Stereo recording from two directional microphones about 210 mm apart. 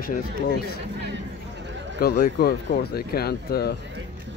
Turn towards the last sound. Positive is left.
turn(degrees=50)  # may be behind; listen again after turning